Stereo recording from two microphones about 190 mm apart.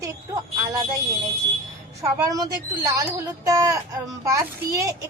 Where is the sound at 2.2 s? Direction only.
15° right (ahead or behind).